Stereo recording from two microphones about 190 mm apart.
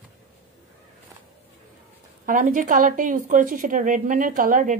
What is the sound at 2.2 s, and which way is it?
A woman's voice, 45° right (ahead or behind).